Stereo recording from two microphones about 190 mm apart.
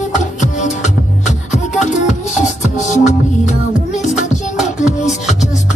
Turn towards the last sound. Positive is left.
turn(degrees=40)  # may be behind; listen again after turning